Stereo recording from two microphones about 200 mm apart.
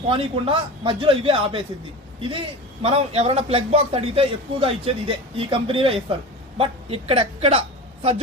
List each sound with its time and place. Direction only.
0.1 s a man's voice: 25° right (ahead or behind)